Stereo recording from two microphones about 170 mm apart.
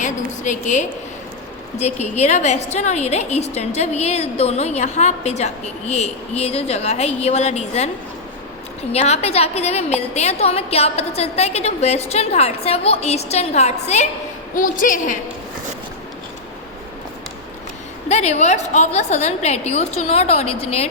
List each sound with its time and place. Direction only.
0.0 s a woman's voice: 45° left (ahead or behind)
8.9 s a woman's voice: 40° left (ahead or behind)
18.1 s a woman's voice: 40° left (ahead or behind)